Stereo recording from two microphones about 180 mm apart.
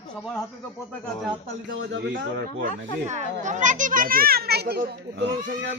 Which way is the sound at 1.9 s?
90° right.